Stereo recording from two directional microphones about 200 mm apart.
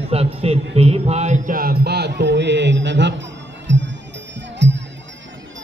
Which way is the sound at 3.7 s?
65° right (ahead or behind).